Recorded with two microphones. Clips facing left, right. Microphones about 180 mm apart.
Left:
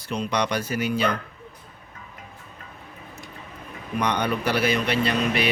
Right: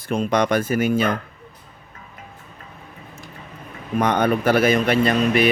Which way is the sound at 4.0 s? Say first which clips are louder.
Right 6 dB; 50° right (ahead or behind).